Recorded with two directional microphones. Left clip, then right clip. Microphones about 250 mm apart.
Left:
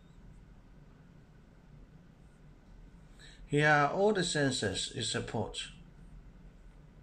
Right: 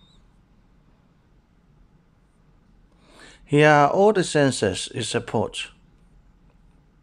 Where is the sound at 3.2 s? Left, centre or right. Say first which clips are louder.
Right 12 dB; right.